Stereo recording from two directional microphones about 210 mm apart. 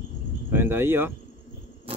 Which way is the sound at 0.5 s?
10° right (ahead or behind).